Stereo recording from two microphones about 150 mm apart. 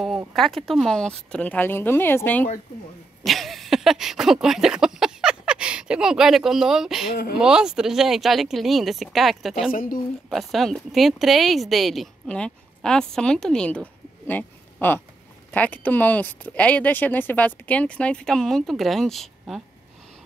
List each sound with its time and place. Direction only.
0.3 s speech: centre (ahead or behind)
3.3 s a sound: centre (ahead or behind)
7.1 s speech: 90° left
7.3 s speech: 5° right (ahead or behind)
9.7 s speech: 70° left (ahead or behind)
10.3 s speech: centre (ahead or behind)